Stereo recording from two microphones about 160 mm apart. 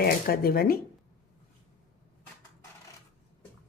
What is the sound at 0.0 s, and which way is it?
Speech, 70° left (ahead or behind).